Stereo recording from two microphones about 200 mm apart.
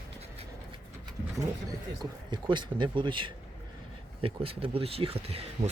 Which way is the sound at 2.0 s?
20° right (ahead or behind).